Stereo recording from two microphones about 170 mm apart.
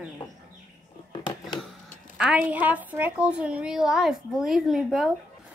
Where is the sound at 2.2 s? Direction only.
5° right (ahead or behind).